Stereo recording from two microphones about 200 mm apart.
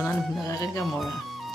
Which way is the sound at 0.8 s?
Centre (ahead or behind).